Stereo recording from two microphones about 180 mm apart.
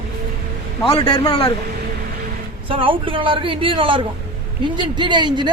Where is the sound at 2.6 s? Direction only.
30° right (ahead or behind).